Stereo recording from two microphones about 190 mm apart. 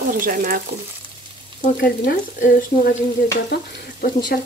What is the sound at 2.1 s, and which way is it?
Speech, 50° left (ahead or behind).